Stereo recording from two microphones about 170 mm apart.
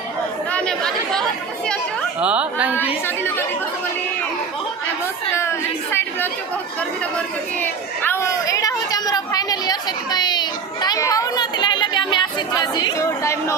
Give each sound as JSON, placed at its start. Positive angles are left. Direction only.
{"t": 0.5, "sound": "chatter", "side_deg": 5}
{"t": 2.2, "sound": "speech", "side_deg": -5}
{"t": 5.3, "sound": "chatter", "side_deg": 15}
{"t": 7.6, "sound": "a woman's voice", "side_deg": 15}